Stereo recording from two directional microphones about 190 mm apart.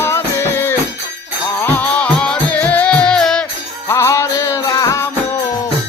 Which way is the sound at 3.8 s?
15° left (ahead or behind).